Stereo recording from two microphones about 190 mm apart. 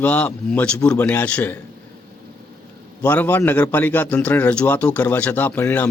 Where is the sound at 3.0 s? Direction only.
10° left (ahead or behind).